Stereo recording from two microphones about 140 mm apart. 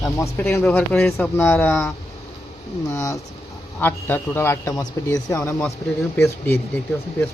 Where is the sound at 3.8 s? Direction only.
15° left (ahead or behind).